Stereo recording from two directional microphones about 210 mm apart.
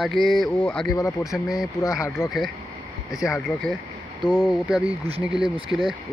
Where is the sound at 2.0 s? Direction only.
15° left (ahead or behind).